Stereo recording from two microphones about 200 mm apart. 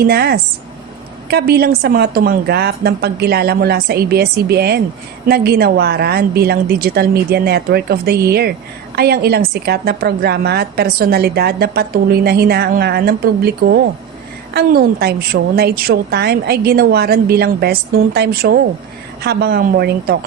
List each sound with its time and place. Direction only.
0.0 s a woman's voice: 50° right (ahead or behind)